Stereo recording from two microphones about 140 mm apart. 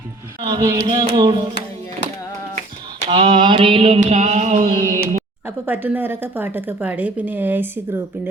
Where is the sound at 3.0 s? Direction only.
35° right (ahead or behind); by 5.0 s 70° right (ahead or behind).